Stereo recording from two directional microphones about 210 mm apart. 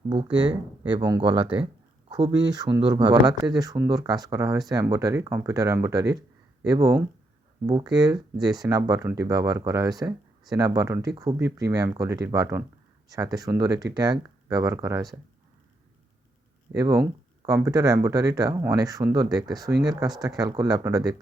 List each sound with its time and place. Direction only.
0.3 s speech: 20° right (ahead or behind)
16.7 s speech: 15° right (ahead or behind)